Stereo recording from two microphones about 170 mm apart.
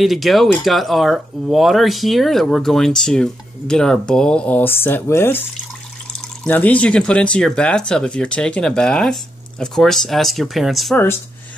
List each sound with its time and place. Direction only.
0.0 s speech: centre (ahead or behind)